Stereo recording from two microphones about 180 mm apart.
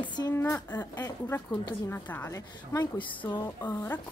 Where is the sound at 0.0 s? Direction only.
25° left (ahead or behind).